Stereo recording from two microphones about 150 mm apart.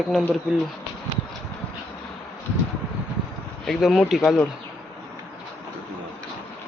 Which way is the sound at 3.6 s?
Centre (ahead or behind).